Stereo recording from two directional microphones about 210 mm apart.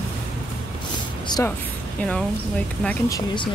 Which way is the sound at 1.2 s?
15° left (ahead or behind).